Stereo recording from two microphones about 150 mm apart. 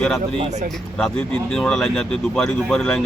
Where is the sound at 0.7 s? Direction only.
5° left (ahead or behind).